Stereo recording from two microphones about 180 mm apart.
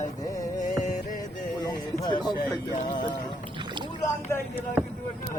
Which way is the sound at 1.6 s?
25° left (ahead or behind).